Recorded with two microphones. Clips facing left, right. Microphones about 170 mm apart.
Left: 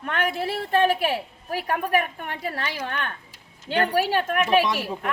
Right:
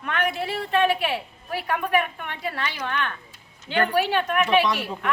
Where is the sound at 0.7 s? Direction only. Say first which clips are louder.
Left 1 dB; 45° left (ahead or behind).